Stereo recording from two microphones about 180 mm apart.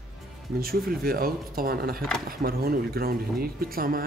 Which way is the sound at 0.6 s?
55° right (ahead or behind).